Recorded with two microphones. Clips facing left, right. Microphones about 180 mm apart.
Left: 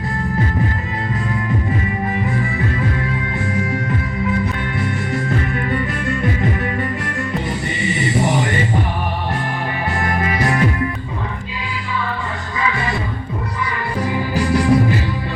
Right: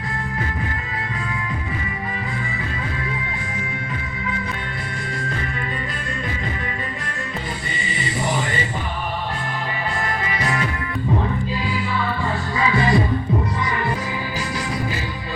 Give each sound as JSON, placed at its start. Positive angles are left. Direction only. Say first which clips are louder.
{"t": 7.8, "sound": "music", "louder": "left 8 dB", "side_deg": 60}
{"t": 10.2, "sound": "music", "louder": "left 6 dB", "side_deg": 55}
{"t": 14.3, "sound": "music", "louder": "left 15 dB", "side_deg": 60}